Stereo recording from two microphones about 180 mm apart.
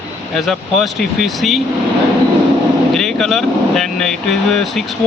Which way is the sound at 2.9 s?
Centre (ahead or behind).